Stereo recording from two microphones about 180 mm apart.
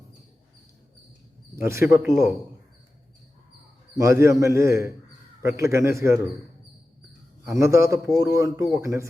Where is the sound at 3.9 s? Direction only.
15° right (ahead or behind).